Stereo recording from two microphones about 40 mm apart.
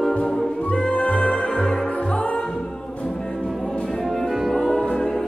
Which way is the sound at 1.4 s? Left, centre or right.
Centre.